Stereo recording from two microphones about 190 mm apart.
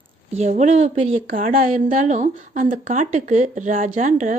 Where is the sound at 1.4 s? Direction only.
45° right (ahead or behind).